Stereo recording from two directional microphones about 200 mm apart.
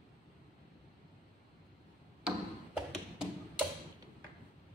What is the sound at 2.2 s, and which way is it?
Tap, 5° right (ahead or behind).